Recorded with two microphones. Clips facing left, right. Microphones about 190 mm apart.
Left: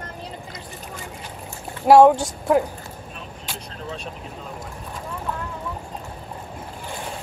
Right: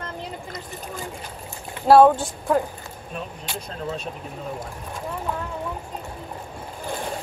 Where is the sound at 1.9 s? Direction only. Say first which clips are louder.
Left 1 dB; 10° left (ahead or behind).